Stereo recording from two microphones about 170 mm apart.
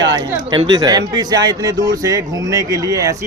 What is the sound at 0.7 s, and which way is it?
Speech, 20° right (ahead or behind).